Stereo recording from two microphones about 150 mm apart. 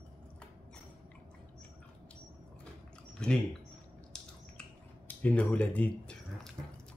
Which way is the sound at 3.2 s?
5° left (ahead or behind).